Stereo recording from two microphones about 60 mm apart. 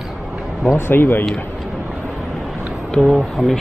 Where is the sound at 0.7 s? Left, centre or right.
Left.